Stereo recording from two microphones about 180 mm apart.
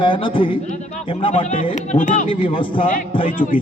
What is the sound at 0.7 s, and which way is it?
Speech, 40° left (ahead or behind).